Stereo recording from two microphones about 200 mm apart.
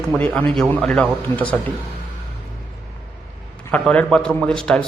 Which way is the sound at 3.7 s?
5° left (ahead or behind).